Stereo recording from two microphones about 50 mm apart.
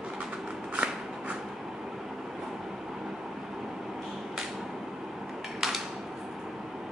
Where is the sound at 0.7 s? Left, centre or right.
Centre.